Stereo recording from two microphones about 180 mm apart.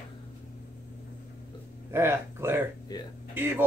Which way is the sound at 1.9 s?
15° right (ahead or behind).